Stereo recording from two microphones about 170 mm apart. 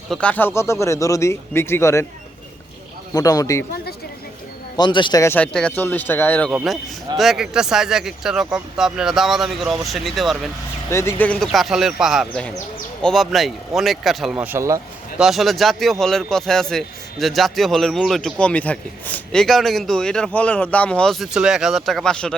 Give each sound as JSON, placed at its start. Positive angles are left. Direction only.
{"t": 0.1, "sound": "speech", "side_deg": 5}
{"t": 3.1, "sound": "a man's voice", "side_deg": 20}
{"t": 4.8, "sound": "a man's voice", "side_deg": 30}
{"t": 5.2, "sound": "speech", "side_deg": 10}
{"t": 7.2, "sound": "a man's voice", "side_deg": -5}
{"t": 10.8, "sound": "a man's voice", "side_deg": 15}
{"t": 14.3, "sound": "speech", "side_deg": -10}
{"t": 15.2, "sound": "a man's voice", "side_deg": 0}